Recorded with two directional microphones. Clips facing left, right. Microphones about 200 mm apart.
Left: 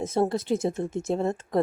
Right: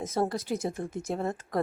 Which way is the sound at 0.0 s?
25° left (ahead or behind).